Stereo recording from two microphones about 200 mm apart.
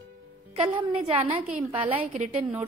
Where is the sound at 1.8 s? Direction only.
30° right (ahead or behind).